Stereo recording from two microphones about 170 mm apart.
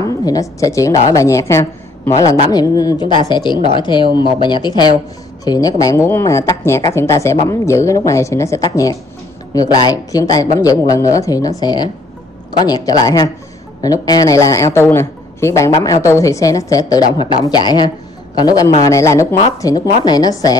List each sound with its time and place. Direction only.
0.0 s a woman's voice: 20° left (ahead or behind)